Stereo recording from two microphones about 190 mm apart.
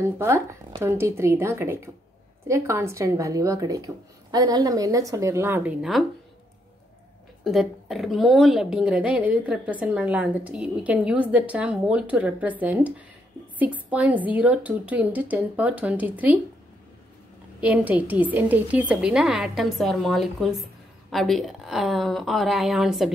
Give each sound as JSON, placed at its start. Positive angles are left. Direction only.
{"t": 0.0, "sound": "a woman's voice", "side_deg": -15}
{"t": 7.4, "sound": "a woman's voice", "side_deg": 0}
{"t": 17.6, "sound": "a woman's voice", "side_deg": -10}